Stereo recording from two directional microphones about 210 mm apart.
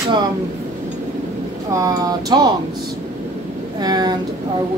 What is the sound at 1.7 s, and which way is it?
Speech, 15° right (ahead or behind).